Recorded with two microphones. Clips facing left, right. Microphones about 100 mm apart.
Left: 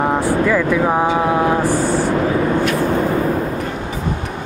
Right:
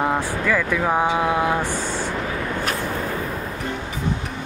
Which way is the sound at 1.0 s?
35° left (ahead or behind).